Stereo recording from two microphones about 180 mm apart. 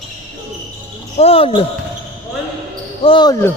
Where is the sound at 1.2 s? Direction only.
30° left (ahead or behind).